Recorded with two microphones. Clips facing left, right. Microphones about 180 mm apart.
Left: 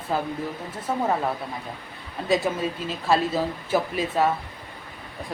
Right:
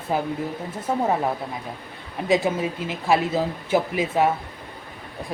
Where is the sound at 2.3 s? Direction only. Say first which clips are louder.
Right 2 dB; 20° right (ahead or behind).